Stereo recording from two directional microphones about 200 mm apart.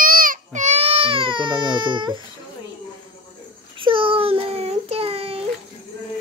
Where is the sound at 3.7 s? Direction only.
25° right (ahead or behind).